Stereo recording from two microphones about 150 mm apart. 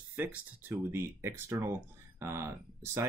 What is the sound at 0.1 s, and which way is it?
Speech, 10° right (ahead or behind).